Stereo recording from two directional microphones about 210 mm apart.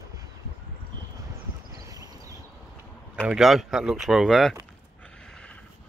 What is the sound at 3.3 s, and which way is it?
Speech, centre (ahead or behind).